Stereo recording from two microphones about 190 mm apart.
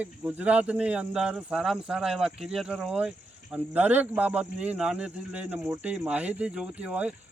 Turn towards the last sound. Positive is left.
turn(degrees=-5)  # may be behind; listen again after turning